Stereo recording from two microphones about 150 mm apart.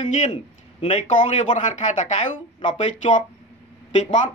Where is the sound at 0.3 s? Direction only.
35° left (ahead or behind).